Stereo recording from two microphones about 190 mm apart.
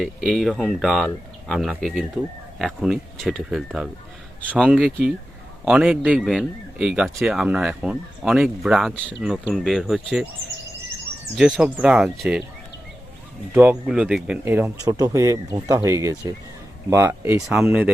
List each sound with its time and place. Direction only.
0.0 s speech: centre (ahead or behind)
5.6 s speech: 5° right (ahead or behind)
11.3 s speech: centre (ahead or behind)
13.5 s speech: 10° right (ahead or behind)
17.5 s speech: 5° right (ahead or behind)